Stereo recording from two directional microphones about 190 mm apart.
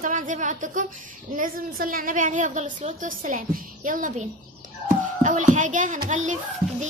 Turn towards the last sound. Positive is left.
turn(degrees=-40)  # may be behind; listen again after turning